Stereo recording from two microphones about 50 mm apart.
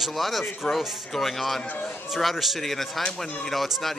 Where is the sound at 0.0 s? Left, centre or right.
Centre.